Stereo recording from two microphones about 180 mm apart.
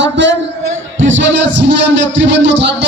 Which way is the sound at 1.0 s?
85° right.